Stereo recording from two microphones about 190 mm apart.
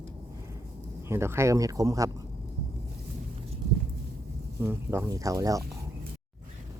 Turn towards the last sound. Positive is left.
turn(degrees=-15)  # may be behind; listen again after turning